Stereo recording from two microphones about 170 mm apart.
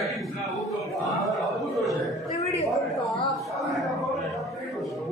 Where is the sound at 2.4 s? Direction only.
40° left (ahead or behind).